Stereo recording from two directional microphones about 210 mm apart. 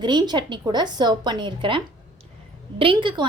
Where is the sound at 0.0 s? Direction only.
20° right (ahead or behind).